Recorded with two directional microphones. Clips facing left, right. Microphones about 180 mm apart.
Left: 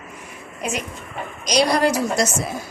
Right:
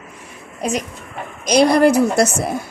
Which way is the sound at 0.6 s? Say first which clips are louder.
Right 5 dB; 35° right (ahead or behind).